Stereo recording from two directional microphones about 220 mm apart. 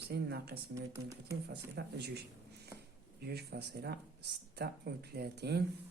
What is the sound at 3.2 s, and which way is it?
Speech, 45° right (ahead or behind).